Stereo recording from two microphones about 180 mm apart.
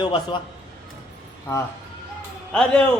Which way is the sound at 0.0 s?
25° left (ahead or behind).